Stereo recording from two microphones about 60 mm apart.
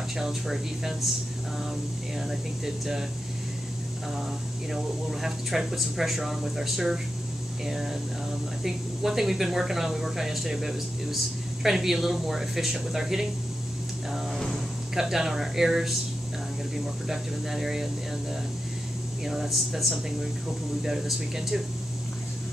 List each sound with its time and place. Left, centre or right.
0.2 s speech: centre
2.1 s speech: centre
4.7 s speech: centre
15.0 s speech: centre
17.1 s speech: centre
19.2 s speech: centre